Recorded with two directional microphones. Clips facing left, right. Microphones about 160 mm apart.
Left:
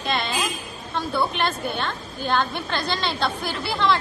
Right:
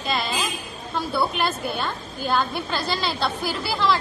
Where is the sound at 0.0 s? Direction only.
Centre (ahead or behind).